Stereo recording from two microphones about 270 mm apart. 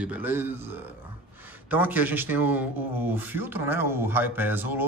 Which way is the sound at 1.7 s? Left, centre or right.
Centre.